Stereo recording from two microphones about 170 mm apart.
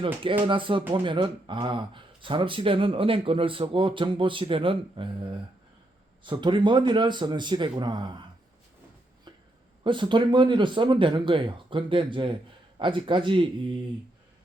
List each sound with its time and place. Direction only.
0.0 s speech: 30° right (ahead or behind)
9.8 s speech: 30° right (ahead or behind)